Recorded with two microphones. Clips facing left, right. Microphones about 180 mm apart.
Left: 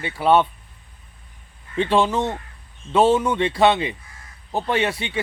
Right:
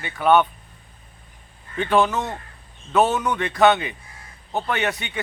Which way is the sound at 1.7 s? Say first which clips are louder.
Left 1 dB; 30° left (ahead or behind).